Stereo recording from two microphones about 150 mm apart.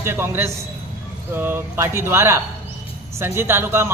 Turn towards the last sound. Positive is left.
turn(degrees=-15)  # may be behind; listen again after turning